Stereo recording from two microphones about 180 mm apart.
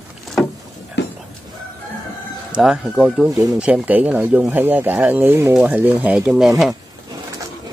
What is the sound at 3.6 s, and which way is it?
Speech, 10° right (ahead or behind).